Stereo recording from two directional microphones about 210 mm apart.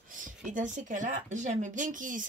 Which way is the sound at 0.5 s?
35° right (ahead or behind).